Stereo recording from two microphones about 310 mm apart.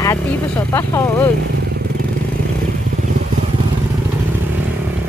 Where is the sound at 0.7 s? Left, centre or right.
Centre.